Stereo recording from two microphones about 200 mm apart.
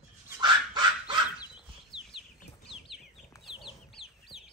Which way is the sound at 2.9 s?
Centre (ahead or behind).